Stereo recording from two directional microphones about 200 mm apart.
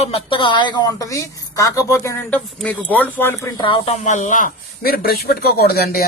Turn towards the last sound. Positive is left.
turn(degrees=50)  # may be behind; listen again after turning